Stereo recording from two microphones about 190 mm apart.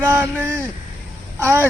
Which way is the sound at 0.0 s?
10° right (ahead or behind).